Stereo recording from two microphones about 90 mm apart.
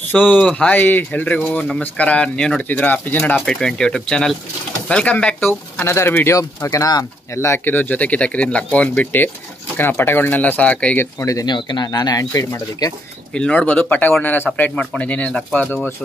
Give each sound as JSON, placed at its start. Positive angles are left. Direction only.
{"t": 0.1, "sound": "speech", "side_deg": 20}
{"t": 3.4, "sound": "speech", "side_deg": 5}
{"t": 6.7, "sound": "speech", "side_deg": 40}
{"t": 7.3, "sound": "speech", "side_deg": 30}
{"t": 11.0, "sound": "speech", "side_deg": 35}
{"t": 11.4, "sound": "speech", "side_deg": 55}
{"t": 13.3, "sound": "speech", "side_deg": 15}